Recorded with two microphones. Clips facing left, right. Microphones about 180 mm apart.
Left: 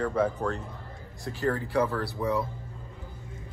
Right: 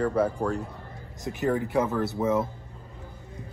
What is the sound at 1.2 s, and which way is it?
Speech, 20° right (ahead or behind).